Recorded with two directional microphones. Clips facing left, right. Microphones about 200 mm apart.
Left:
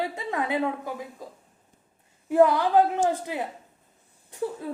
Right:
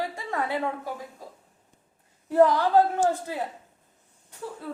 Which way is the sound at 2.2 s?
10° left (ahead or behind).